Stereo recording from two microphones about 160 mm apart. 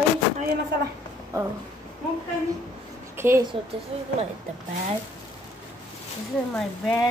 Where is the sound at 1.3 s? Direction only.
20° right (ahead or behind).